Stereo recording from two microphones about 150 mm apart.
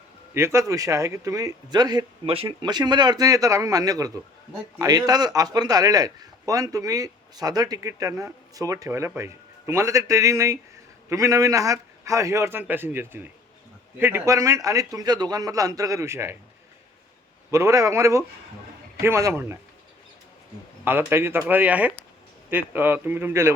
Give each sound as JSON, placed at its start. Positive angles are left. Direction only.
{"t": 0.3, "sound": "a man's voice", "side_deg": -20}
{"t": 17.5, "sound": "a man's voice", "side_deg": -20}
{"t": 20.8, "sound": "speech", "side_deg": -15}